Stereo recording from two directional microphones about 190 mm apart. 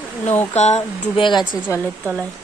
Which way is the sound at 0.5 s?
35° left (ahead or behind).